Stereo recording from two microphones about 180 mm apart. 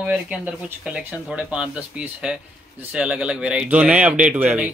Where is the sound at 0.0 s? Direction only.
5° right (ahead or behind).